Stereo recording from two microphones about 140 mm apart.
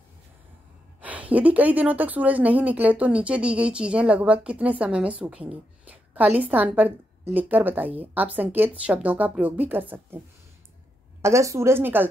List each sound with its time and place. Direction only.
1.0 s a woman's voice: 10° right (ahead or behind)
11.2 s speech: 20° right (ahead or behind)